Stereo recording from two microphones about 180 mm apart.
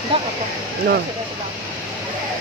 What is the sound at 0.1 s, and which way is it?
Speech, 30° right (ahead or behind).